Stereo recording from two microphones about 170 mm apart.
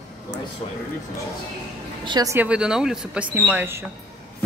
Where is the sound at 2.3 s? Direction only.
5° right (ahead or behind).